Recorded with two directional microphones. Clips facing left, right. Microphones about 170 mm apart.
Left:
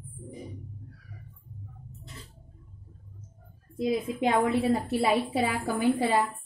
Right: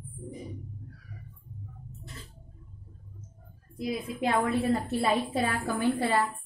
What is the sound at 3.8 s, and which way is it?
A woman's voice, 20° left (ahead or behind).